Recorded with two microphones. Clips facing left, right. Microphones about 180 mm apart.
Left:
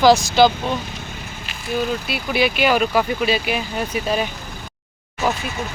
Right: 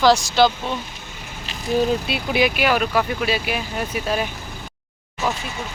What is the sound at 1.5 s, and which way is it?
Speech, 35° right (ahead or behind).